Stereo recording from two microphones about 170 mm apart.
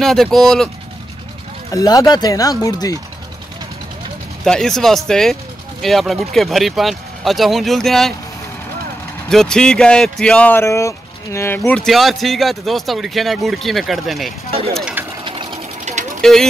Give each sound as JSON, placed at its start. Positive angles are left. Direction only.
{"t": 0.0, "sound": "speech", "side_deg": 0}
{"t": 1.7, "sound": "speech", "side_deg": 20}
{"t": 4.5, "sound": "speech", "side_deg": 5}
{"t": 9.3, "sound": "speech", "side_deg": 5}
{"t": 15.2, "sound": "sewing machine", "side_deg": -30}
{"t": 15.8, "sound": "a sound", "side_deg": -45}
{"t": 16.2, "sound": "speech", "side_deg": 5}